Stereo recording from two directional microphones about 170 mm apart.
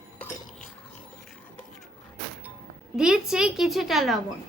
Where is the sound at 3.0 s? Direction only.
5° right (ahead or behind).